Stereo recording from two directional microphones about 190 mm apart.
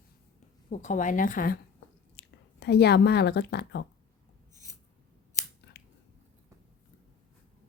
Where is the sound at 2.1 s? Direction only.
60° left (ahead or behind).